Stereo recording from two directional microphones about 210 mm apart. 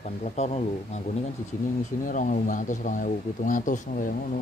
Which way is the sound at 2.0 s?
40° left (ahead or behind).